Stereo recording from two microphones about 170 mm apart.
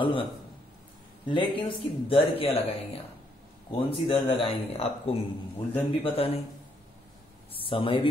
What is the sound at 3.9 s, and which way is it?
Speech, 35° left (ahead or behind).